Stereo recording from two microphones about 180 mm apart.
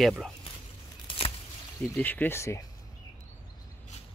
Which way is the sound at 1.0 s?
30° left (ahead or behind).